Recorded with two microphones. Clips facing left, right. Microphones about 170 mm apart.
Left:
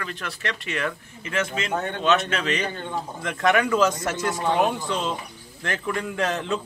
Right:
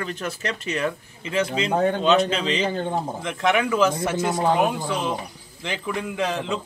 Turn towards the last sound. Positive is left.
turn(degrees=0)  # may be behind; listen again after turning